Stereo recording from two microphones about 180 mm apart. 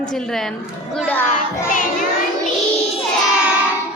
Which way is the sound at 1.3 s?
45° left (ahead or behind).